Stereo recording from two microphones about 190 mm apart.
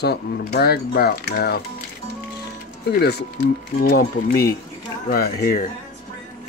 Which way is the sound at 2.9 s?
60° left (ahead or behind).